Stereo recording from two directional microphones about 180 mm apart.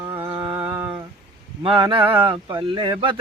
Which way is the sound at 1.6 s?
30° right (ahead or behind).